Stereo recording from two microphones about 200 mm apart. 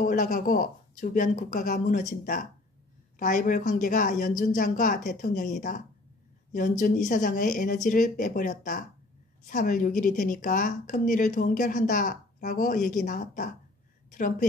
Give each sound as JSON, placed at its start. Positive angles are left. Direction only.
{"t": 0.0, "sound": "a woman's voice", "side_deg": 40}
{"t": 6.8, "sound": "a woman's voice", "side_deg": 40}